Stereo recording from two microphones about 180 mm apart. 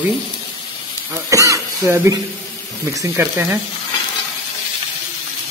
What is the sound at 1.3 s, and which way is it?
Throat clearing, 15° right (ahead or behind).